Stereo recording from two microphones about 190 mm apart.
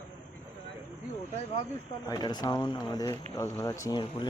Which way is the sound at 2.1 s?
20° left (ahead or behind).